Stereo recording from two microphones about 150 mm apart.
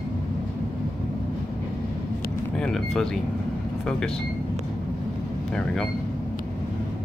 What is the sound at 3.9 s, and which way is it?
Speech, 5° left (ahead or behind).